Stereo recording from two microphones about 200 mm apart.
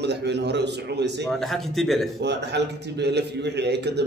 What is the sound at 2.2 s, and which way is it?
A man's voice, 60° right (ahead or behind).